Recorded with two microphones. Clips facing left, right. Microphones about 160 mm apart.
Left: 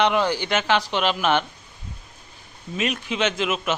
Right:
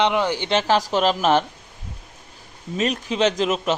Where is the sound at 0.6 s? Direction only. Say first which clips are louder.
Right 5 dB; 40° right (ahead or behind).